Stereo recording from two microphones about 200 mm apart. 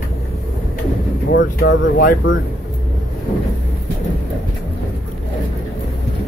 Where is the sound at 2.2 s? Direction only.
70° left (ahead or behind).